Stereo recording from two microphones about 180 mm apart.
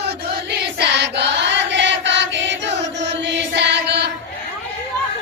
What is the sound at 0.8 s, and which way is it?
Chant, 70° right (ahead or behind).